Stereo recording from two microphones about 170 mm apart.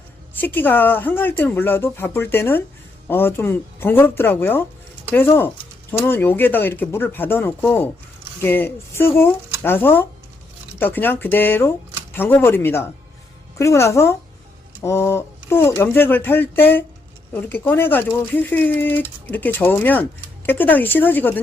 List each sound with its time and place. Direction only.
0.3 s speech: 10° left (ahead or behind)